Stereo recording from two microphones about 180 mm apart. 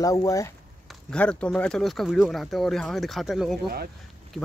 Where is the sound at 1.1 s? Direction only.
5° left (ahead or behind).